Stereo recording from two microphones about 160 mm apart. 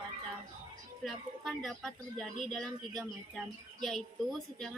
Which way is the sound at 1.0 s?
Centre (ahead or behind).